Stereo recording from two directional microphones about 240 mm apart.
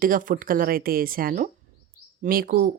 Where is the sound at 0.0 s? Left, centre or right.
Right.